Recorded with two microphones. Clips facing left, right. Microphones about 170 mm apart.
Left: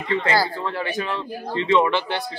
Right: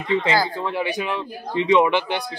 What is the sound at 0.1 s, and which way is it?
A man's voice, 15° right (ahead or behind).